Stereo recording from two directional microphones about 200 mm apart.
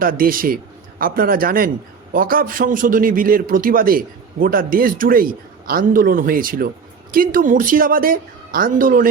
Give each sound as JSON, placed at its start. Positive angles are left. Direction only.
{"t": 0.0, "sound": "a man's voice", "side_deg": -45}